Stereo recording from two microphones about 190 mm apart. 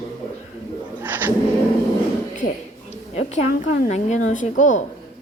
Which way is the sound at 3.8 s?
40° left (ahead or behind).